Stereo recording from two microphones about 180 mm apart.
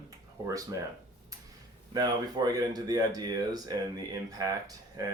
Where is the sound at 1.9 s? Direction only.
20° right (ahead or behind).